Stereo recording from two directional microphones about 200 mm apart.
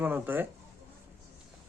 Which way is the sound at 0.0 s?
10° right (ahead or behind).